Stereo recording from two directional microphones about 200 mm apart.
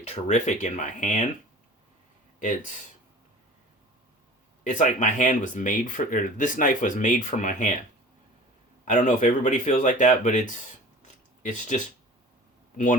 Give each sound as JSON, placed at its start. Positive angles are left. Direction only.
{"t": 0.0, "sound": "speech", "side_deg": 35}
{"t": 2.4, "sound": "speech", "side_deg": 40}
{"t": 4.6, "sound": "speech", "side_deg": 40}
{"t": 8.8, "sound": "speech", "side_deg": 40}
{"t": 11.0, "sound": "a sound", "side_deg": 35}
{"t": 12.7, "sound": "speech", "side_deg": 40}